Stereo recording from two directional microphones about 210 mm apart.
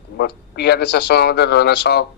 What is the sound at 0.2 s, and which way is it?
Speech, 50° left (ahead or behind).